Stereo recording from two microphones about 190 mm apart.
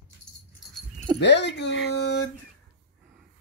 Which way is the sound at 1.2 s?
65° left (ahead or behind).